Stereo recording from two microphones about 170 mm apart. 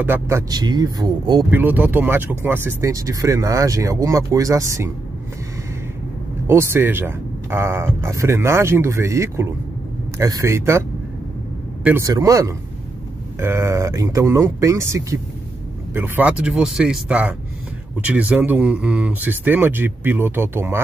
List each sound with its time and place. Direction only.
0.0 s speech: 15° right (ahead or behind)
1.5 s speech: 10° right (ahead or behind)
6.4 s speech: 15° right (ahead or behind)